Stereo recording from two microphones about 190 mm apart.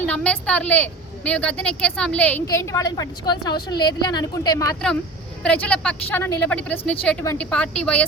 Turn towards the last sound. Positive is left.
turn(degrees=5)  # may be behind; listen again after turning